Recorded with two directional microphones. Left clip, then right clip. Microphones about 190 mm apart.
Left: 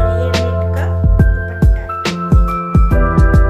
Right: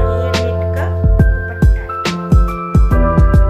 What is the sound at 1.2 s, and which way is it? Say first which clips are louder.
Music: left 1 dB; centre (ahead or behind).